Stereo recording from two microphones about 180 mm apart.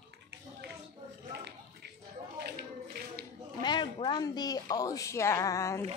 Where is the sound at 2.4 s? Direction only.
60° right (ahead or behind).